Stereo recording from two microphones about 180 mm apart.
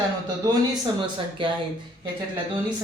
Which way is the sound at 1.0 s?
25° right (ahead or behind).